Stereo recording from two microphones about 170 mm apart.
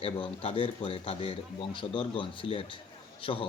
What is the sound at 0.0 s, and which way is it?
Speech, 30° left (ahead or behind).